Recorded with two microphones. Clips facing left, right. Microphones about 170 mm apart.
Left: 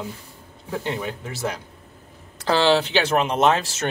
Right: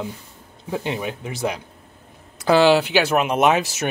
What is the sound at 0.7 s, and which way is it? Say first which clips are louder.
Speech: right 2 dB; 15° right (ahead or behind).